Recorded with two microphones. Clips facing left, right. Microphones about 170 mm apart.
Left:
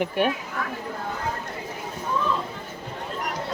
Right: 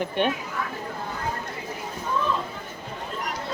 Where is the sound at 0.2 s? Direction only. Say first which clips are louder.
Left 1 dB; 5° left (ahead or behind).